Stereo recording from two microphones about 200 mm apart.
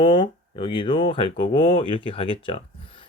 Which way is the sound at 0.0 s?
25° left (ahead or behind).